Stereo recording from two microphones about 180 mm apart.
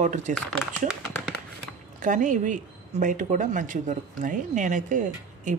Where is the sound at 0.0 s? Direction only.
40° right (ahead or behind).